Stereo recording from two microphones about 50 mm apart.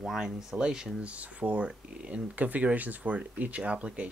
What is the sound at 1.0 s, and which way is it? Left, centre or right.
Speech, right.